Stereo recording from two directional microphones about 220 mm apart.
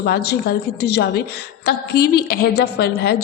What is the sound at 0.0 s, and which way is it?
A woman's voice, 50° left (ahead or behind).